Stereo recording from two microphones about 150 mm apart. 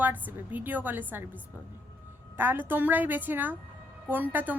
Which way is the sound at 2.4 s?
15° right (ahead or behind).